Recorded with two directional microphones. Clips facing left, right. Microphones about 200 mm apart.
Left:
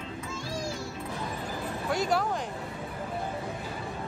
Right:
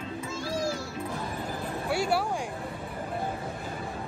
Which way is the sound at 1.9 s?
10° right (ahead or behind).